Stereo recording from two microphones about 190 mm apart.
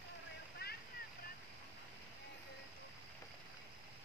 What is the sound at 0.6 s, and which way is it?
Boat, 55° left (ahead or behind).